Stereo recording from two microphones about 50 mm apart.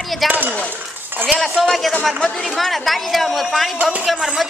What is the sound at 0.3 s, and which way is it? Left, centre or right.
Speech, right.